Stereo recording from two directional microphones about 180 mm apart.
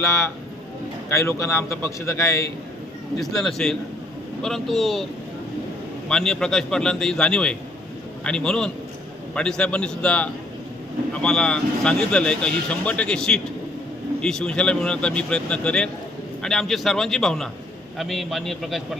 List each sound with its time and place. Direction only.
0.0 s a man's voice: 15° left (ahead or behind)
3.2 s speech: centre (ahead or behind)
6.1 s speech: 5° left (ahead or behind)